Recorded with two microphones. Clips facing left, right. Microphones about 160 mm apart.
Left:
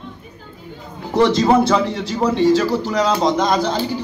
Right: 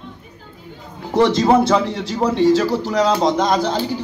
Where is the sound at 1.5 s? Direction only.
20° right (ahead or behind).